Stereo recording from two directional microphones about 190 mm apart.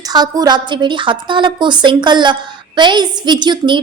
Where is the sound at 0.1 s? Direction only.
20° right (ahead or behind).